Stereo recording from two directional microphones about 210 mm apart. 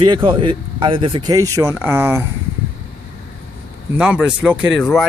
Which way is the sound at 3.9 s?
5° right (ahead or behind).